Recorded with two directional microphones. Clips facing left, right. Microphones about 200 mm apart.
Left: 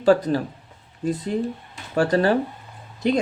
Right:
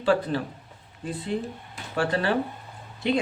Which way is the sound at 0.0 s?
40° left (ahead or behind).